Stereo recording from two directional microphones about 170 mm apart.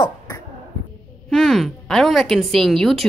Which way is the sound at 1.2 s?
Centre (ahead or behind).